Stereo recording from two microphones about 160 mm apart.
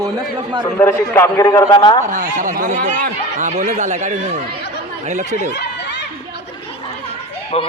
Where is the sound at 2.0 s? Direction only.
50° right (ahead or behind).